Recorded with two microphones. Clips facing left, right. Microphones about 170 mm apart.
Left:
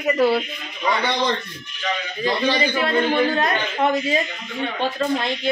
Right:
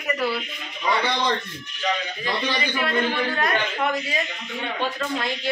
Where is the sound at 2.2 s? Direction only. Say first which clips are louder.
Left 6 dB; 30° left (ahead or behind).